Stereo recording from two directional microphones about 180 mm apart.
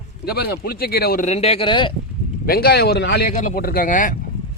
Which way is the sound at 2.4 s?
60° left (ahead or behind).